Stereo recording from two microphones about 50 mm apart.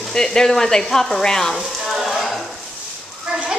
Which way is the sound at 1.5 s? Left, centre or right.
Centre.